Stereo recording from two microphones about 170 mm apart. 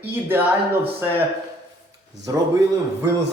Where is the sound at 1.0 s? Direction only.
15° right (ahead or behind).